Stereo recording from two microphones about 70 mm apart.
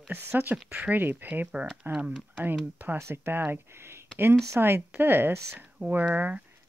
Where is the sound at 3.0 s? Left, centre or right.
Right.